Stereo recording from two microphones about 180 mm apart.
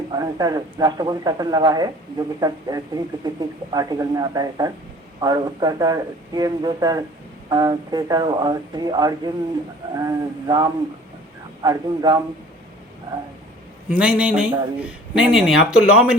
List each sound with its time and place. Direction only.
0.1 s speech: 20° right (ahead or behind)
13.9 s a man's voice: 5° right (ahead or behind)